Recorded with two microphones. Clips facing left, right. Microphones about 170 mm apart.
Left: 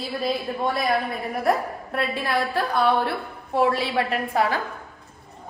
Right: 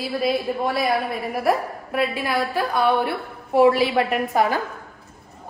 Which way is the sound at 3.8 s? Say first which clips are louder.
Right 4 dB; 15° right (ahead or behind).